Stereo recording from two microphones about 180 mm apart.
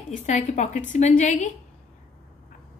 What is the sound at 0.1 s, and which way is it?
A woman's voice, 45° left (ahead or behind).